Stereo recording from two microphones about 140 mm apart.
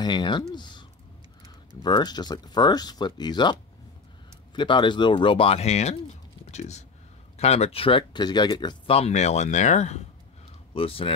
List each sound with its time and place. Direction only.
0.0 s speech: 30° left (ahead or behind)
4.6 s speech: 35° left (ahead or behind); by 10.0 s 55° left (ahead or behind)
10.7 s speech: 40° left (ahead or behind)